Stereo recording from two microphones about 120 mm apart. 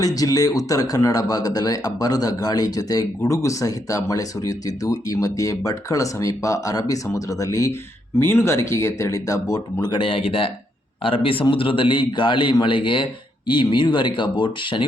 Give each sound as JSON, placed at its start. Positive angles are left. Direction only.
{"t": 0.0, "sound": "speech", "side_deg": 30}
{"t": 9.8, "sound": "a man's voice", "side_deg": 40}